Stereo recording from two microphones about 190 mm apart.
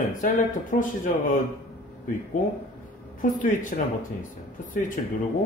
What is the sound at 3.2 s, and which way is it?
Speech, 45° left (ahead or behind).